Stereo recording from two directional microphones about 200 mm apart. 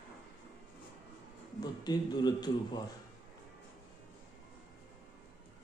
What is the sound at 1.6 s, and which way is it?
A man's voice, 20° left (ahead or behind).